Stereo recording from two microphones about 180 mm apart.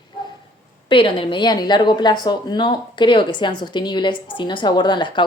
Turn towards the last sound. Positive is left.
turn(degrees=25)  # may be behind; listen again after turning